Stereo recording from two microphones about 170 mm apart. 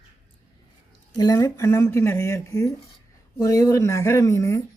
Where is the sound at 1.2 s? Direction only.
20° left (ahead or behind).